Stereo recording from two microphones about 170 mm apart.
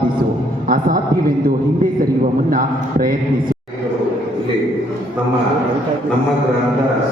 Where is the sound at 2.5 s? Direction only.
55° right (ahead or behind).